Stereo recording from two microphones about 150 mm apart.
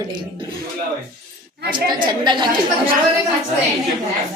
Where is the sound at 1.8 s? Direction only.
30° right (ahead or behind).